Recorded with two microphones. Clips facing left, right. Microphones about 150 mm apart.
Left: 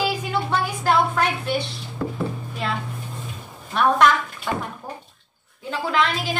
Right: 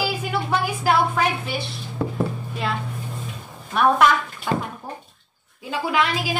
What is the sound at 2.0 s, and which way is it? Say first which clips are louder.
Chopping: right 1 dB; 15° right (ahead or behind).